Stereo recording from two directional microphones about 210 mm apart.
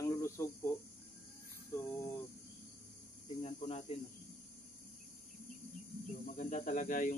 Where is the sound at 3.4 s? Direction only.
30° left (ahead or behind).